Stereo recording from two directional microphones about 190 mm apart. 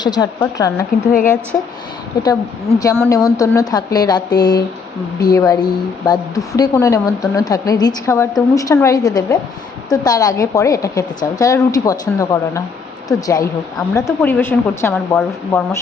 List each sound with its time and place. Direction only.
0.0 s a woman's voice: 20° left (ahead or behind)
1.0 s speech: 40° left (ahead or behind)
1.5 s a woman's voice: 10° left (ahead or behind)